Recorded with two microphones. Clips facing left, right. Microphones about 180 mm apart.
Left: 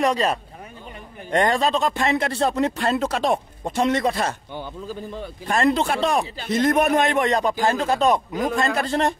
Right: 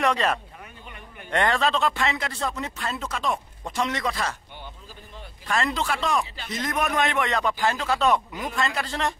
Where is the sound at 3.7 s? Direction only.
50° left (ahead or behind).